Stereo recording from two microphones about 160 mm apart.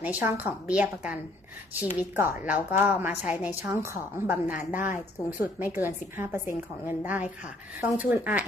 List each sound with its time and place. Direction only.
0.0 s a woman's voice: 10° right (ahead or behind)
4.7 s speech: 55° left (ahead or behind)
5.4 s a woman's voice: 10° right (ahead or behind)